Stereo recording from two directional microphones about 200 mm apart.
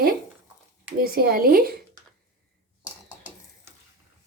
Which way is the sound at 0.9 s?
50° right (ahead or behind).